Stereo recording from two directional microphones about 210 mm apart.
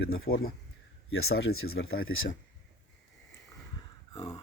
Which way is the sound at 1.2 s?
80° left.